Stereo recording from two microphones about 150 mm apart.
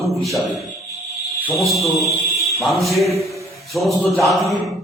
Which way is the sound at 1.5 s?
Centre (ahead or behind).